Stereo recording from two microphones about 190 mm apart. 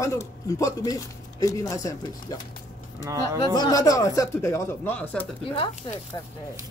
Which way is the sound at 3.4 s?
20° left (ahead or behind).